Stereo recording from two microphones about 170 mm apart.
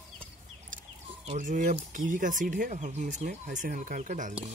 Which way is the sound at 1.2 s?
45° right (ahead or behind).